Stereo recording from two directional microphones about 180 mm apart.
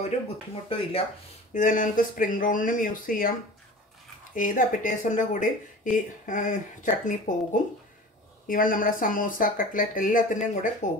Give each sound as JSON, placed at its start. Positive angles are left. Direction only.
{"t": 0.7, "sound": "speech", "side_deg": 30}
{"t": 1.5, "sound": "speech", "side_deg": 45}
{"t": 4.4, "sound": "speech", "side_deg": 45}
{"t": 8.5, "sound": "speech", "side_deg": 50}